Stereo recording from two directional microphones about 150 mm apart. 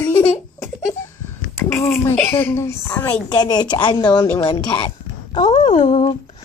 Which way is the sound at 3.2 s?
25° left (ahead or behind).